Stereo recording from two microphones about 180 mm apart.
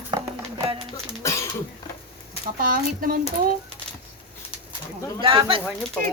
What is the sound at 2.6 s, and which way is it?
Speech, 50° right (ahead or behind).